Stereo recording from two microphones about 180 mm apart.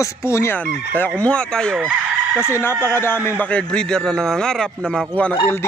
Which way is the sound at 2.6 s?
10° left (ahead or behind).